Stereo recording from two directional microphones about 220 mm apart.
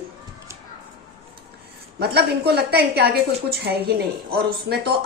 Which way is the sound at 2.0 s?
45° right (ahead or behind).